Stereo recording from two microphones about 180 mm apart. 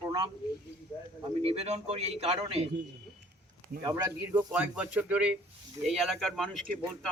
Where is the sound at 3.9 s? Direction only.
20° right (ahead or behind); by 6.7 s centre (ahead or behind).